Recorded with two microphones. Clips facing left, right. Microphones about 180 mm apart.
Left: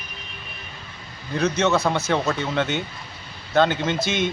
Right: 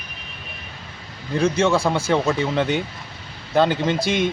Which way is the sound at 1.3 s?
30° right (ahead or behind).